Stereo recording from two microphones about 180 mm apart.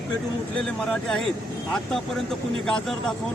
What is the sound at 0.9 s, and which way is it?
Speech, 5° left (ahead or behind).